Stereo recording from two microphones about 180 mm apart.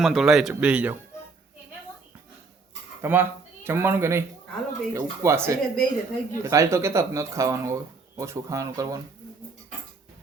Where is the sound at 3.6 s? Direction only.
10° right (ahead or behind).